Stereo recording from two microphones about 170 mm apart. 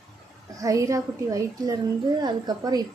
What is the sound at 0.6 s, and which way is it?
A woman's voice, 20° right (ahead or behind).